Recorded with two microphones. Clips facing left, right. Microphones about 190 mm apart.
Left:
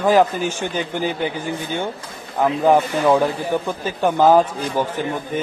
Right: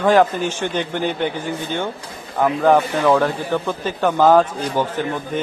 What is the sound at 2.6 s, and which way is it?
A man's voice, 10° left (ahead or behind).